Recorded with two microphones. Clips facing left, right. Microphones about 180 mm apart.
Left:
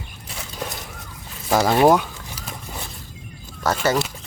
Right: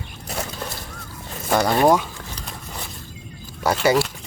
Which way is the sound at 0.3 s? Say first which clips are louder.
Right 9 dB; 45° right (ahead or behind).